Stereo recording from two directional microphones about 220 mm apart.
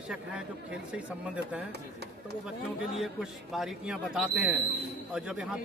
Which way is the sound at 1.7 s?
50° right (ahead or behind).